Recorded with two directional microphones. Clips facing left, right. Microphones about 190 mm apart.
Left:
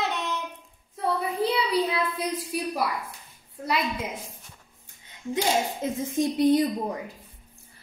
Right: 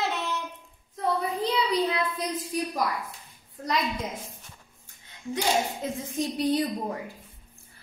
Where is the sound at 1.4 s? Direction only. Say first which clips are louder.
Left 1 dB; 10° left (ahead or behind).